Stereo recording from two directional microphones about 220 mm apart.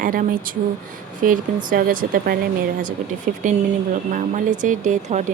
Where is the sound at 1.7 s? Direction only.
40° right (ahead or behind).